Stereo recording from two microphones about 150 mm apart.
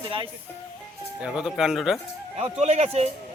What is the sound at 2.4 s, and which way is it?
Speech, 45° right (ahead or behind).